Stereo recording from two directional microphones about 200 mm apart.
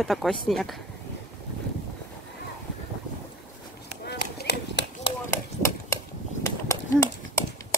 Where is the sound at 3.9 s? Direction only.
55° left (ahead or behind).